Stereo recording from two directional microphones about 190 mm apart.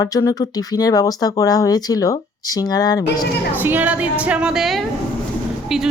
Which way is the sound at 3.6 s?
10° right (ahead or behind).